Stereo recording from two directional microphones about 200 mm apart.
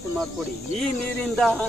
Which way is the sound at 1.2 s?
5° left (ahead or behind).